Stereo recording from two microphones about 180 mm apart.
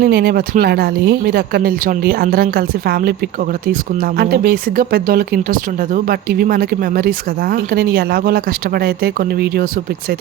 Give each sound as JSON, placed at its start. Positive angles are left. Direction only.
{"t": 0.0, "sound": "speech", "side_deg": -60}
{"t": 4.2, "sound": "speech", "side_deg": -60}